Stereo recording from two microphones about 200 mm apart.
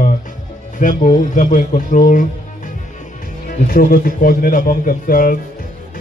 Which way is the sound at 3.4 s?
45° left (ahead or behind).